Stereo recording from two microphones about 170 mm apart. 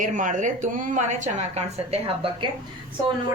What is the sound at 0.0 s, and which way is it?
A woman's voice, 50° right (ahead or behind).